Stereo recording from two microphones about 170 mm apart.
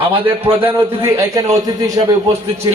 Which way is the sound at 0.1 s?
30° right (ahead or behind).